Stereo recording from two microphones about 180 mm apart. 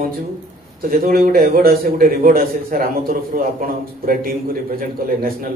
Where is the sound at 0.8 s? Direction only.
55° right (ahead or behind).